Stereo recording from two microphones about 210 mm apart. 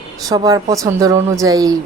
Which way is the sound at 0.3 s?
15° right (ahead or behind).